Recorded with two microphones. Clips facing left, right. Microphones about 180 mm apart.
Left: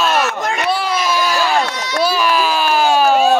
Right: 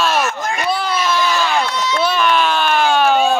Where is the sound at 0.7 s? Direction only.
5° left (ahead or behind).